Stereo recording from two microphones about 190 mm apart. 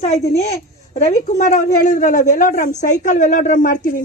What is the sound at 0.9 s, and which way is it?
A woman's voice, 40° left (ahead or behind).